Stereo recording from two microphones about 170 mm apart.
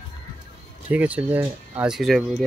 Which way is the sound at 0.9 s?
10° right (ahead or behind).